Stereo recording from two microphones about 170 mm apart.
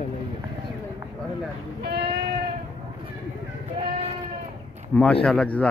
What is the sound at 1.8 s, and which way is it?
Sheep, 75° right (ahead or behind).